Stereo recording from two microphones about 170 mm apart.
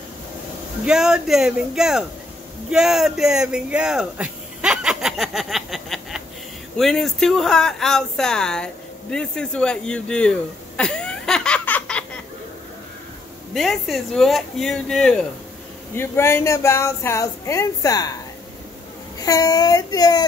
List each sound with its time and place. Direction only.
0.8 s speech: 5° right (ahead or behind)
13.5 s speech: centre (ahead or behind)
15.9 s speech: 15° left (ahead or behind)
19.1 s speech: 20° left (ahead or behind)